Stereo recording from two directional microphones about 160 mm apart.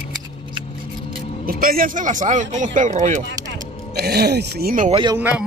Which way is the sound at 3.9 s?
85° right.